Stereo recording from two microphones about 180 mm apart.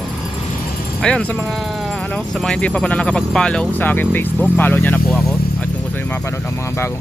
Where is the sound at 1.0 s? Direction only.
5° left (ahead or behind).